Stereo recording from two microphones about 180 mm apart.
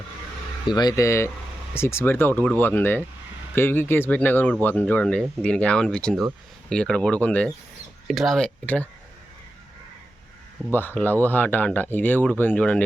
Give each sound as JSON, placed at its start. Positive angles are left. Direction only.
{"t": 0.7, "sound": "speech", "side_deg": 20}
{"t": 10.8, "sound": "speech", "side_deg": 10}